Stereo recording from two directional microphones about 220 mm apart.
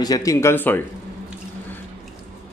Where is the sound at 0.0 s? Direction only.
15° left (ahead or behind).